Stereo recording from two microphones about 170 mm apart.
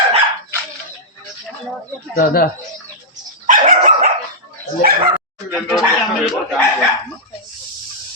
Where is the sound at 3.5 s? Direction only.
50° right (ahead or behind).